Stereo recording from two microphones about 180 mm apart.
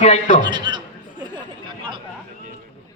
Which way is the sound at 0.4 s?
25° right (ahead or behind).